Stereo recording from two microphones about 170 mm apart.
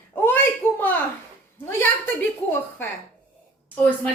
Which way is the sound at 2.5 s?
10° left (ahead or behind).